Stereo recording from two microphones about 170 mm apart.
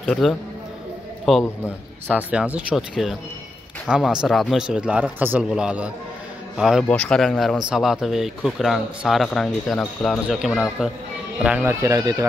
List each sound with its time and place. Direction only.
0.0 s speech: centre (ahead or behind)
11.8 s speech: 20° right (ahead or behind)